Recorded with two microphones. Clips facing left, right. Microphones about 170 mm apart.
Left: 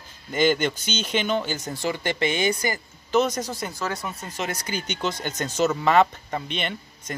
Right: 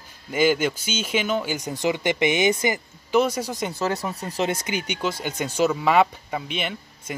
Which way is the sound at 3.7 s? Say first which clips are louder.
Right 4 dB; 30° right (ahead or behind).